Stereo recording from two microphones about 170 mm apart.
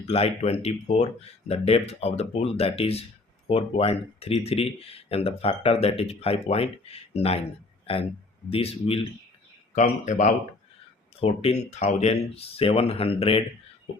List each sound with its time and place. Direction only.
0.1 s speech: 35° left (ahead or behind)
8.4 s speech: 35° left (ahead or behind)
10.1 s speech: 45° left (ahead or behind)